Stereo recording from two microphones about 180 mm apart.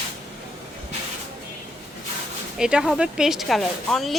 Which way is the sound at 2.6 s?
5° right (ahead or behind).